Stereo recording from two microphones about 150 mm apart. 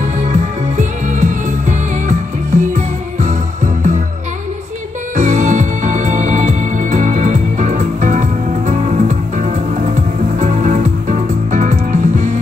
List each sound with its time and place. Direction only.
0.0 s music: 55° right (ahead or behind)
5.1 s music: 55° right (ahead or behind)